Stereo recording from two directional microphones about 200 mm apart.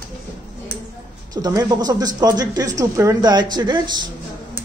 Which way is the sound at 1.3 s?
20° right (ahead or behind).